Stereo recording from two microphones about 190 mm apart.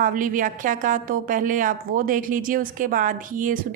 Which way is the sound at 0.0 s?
45° right (ahead or behind).